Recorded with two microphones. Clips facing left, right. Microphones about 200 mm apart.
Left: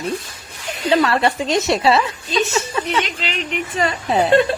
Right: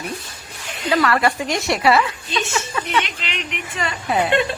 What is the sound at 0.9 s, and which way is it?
Speech, 25° left (ahead or behind).